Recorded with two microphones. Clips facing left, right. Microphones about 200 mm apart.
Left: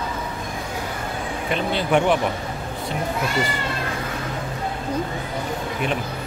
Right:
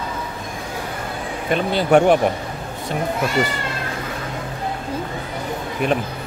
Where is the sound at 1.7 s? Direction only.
45° right (ahead or behind).